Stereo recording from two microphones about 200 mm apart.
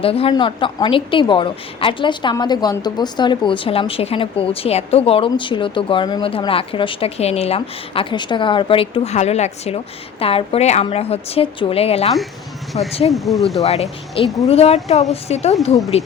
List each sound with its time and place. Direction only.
0.0 s a woman's voice: 30° left (ahead or behind)
13.1 s speech: centre (ahead or behind)
13.6 s speech: 30° left (ahead or behind)